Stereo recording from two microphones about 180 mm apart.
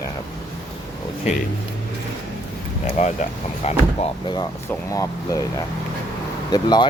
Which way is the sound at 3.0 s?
40° left (ahead or behind).